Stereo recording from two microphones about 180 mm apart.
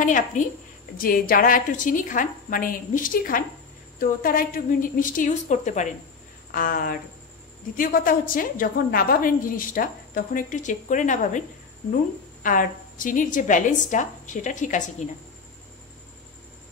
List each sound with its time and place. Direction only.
0.0 s a woman's voice: 45° left (ahead or behind)
6.5 s a woman's voice: 50° left (ahead or behind)
12.4 s a woman's voice: 50° left (ahead or behind)